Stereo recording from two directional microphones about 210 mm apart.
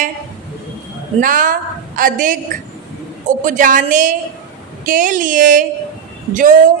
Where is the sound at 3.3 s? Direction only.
35° right (ahead or behind).